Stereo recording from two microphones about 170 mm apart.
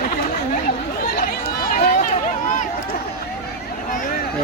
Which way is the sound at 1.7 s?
50° left (ahead or behind).